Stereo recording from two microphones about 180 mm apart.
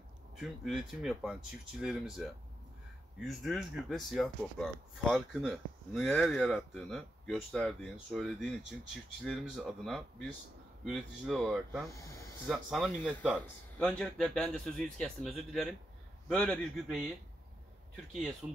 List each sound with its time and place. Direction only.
0.4 s speech: centre (ahead or behind)
3.3 s speech: centre (ahead or behind)
11.9 s snake: 15° left (ahead or behind)
12.4 s speech: centre (ahead or behind)
18.4 s speech: 15° right (ahead or behind)